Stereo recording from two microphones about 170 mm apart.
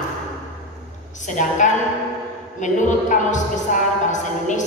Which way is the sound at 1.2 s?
45° left (ahead or behind).